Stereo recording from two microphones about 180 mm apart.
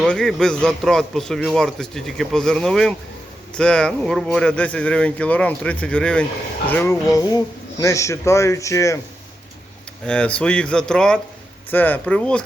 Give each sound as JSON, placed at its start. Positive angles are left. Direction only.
{"t": 0.0, "sound": "a man's voice", "side_deg": 0}
{"t": 10.1, "sound": "a man's voice", "side_deg": 5}